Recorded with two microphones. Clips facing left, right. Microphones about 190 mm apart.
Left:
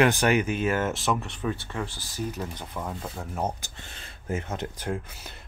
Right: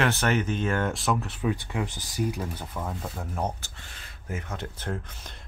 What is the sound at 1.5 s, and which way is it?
Speech, 15° right (ahead or behind).